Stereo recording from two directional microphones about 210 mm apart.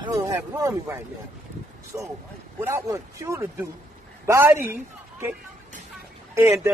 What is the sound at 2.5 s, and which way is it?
Speech, 15° right (ahead or behind).